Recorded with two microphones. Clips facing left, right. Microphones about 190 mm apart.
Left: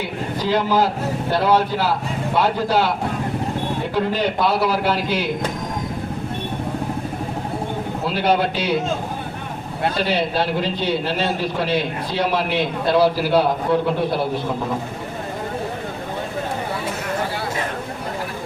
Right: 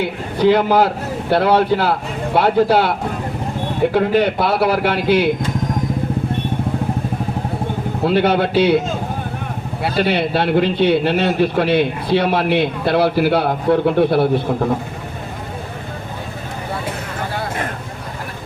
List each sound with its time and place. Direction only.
0.3 s a man's voice: 60° right (ahead or behind)
3.9 s a man's voice: 60° right (ahead or behind)
8.0 s a man's voice: 60° right (ahead or behind)
10.0 s a man's voice: 60° right (ahead or behind)